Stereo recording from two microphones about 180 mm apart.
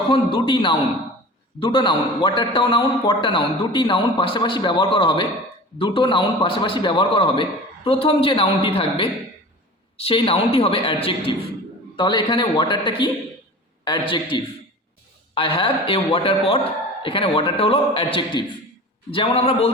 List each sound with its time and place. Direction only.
0.1 s a man's voice: 30° left (ahead or behind)